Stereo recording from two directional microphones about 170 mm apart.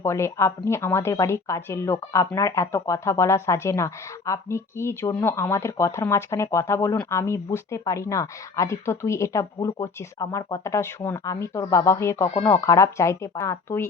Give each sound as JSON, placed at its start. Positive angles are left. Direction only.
{"t": 0.0, "sound": "speech", "side_deg": 15}